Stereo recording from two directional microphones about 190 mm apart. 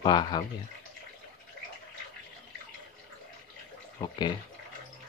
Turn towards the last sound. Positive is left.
turn(degrees=25)  # may be behind; listen again after turning